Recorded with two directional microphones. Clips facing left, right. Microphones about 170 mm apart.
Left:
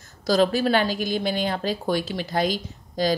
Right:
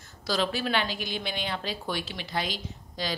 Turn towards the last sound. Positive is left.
turn(degrees=45)  # may be behind; listen again after turning